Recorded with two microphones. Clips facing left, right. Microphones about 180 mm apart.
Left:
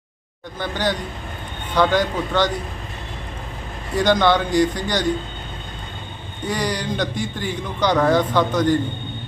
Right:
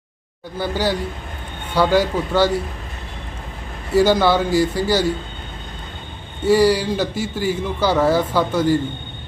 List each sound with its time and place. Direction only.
0.6 s a man's voice: 10° right (ahead or behind)
3.9 s a man's voice: 5° right (ahead or behind)
6.4 s a man's voice: 5° right (ahead or behind)